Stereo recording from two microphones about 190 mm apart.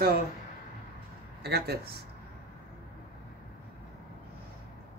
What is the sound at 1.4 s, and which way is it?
Speech, 60° right (ahead or behind).